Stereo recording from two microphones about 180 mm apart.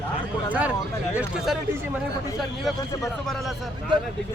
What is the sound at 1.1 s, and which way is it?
Speech, 10° right (ahead or behind).